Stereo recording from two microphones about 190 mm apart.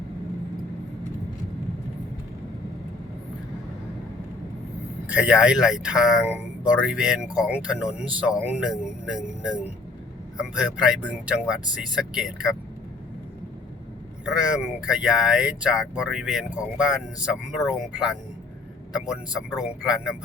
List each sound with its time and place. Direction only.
5.0 s speech: 5° right (ahead or behind)
14.3 s speech: 5° right (ahead or behind)